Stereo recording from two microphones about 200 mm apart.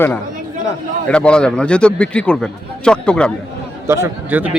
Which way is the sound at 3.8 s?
15° right (ahead or behind).